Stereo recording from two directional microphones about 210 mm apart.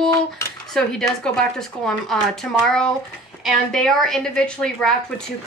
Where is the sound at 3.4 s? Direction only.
Centre (ahead or behind).